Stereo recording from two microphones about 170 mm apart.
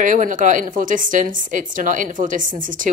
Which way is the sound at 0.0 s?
50° right (ahead or behind).